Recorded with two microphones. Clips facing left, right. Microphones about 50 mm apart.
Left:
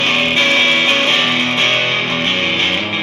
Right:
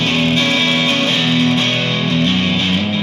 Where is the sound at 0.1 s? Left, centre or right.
Left.